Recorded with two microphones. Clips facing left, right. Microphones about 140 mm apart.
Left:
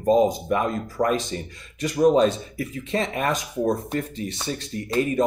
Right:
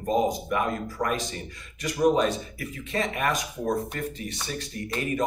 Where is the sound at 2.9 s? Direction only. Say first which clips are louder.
Left 3 dB; 30° left (ahead or behind).